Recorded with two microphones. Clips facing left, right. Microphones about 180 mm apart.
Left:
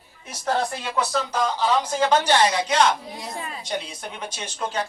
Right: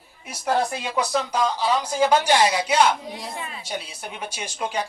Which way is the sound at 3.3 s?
40° left (ahead or behind).